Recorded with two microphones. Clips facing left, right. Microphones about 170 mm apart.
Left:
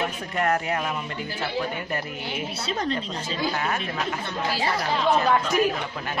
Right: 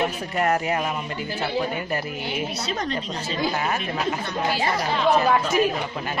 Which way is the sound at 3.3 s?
15° right (ahead or behind).